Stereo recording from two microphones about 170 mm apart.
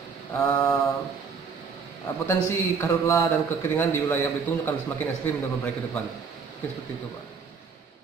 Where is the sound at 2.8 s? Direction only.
15° left (ahead or behind).